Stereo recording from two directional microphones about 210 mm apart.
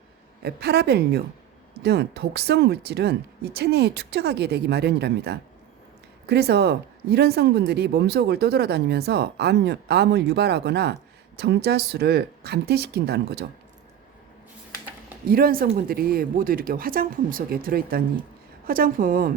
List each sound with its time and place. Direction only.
0.4 s speech: 50° right (ahead or behind)
15.3 s speech: 45° right (ahead or behind)